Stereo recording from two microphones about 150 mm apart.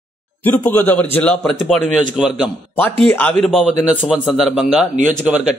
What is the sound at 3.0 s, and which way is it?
Speech, 10° left (ahead or behind).